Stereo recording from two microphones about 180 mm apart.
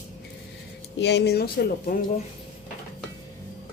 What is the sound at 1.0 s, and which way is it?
Speech, 70° left (ahead or behind).